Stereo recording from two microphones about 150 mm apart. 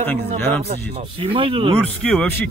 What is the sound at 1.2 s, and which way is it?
Speech, 35° right (ahead or behind).